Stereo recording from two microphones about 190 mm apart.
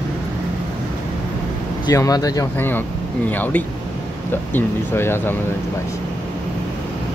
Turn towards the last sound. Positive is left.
turn(degrees=10)  # may be behind; listen again after turning